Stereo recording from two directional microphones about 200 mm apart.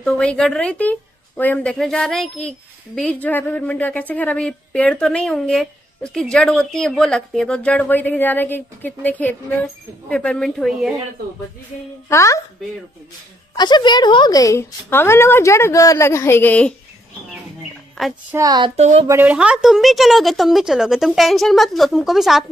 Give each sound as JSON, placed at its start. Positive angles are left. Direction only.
{"t": 0.0, "sound": "a woman's voice", "side_deg": 5}
{"t": 12.1, "sound": "a woman's voice", "side_deg": 15}
{"t": 13.6, "sound": "a woman's voice", "side_deg": 20}
{"t": 18.0, "sound": "a woman's voice", "side_deg": 0}
{"t": 18.3, "sound": "speech", "side_deg": -20}
{"t": 18.8, "sound": "speech", "side_deg": -35}
{"t": 19.0, "sound": "a woman's voice", "side_deg": -10}